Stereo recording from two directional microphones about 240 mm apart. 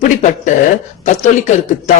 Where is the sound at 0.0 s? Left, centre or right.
Left.